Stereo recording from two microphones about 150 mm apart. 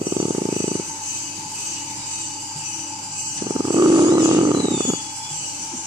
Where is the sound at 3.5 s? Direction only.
25° right (ahead or behind).